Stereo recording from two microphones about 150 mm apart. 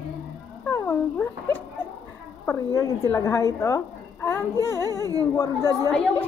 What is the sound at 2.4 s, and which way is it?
A woman's voice, 20° left (ahead or behind).